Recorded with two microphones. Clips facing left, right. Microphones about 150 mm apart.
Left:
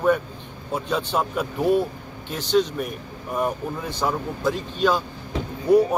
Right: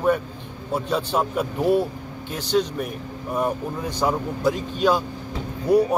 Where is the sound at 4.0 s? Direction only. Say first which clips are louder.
Right 3 dB; 10° right (ahead or behind).